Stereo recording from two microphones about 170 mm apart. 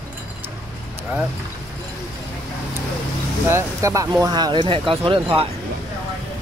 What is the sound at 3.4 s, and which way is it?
Speech, 15° right (ahead or behind).